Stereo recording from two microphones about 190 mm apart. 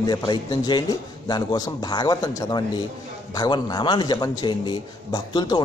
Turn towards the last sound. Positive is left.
turn(degrees=20)  # may be behind; listen again after turning